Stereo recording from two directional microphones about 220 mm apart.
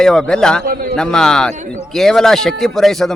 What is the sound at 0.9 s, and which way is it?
A man's voice, 5° left (ahead or behind).